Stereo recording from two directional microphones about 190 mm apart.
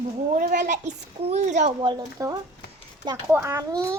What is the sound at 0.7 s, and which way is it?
Child singing, 35° right (ahead or behind).